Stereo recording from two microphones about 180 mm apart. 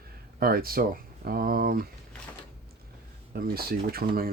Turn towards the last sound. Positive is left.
turn(degrees=-55)  # may be behind; listen again after turning